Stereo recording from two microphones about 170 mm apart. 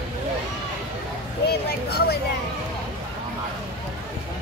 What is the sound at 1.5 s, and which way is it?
Speech, 70° left (ahead or behind).